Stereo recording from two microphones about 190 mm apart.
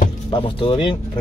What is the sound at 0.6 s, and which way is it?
Speech, 30° left (ahead or behind).